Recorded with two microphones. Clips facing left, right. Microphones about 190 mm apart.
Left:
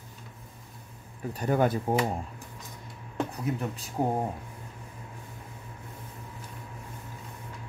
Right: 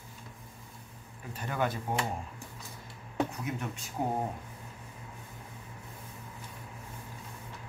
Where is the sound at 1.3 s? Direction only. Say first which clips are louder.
Left 7 dB; 40° left (ahead or behind).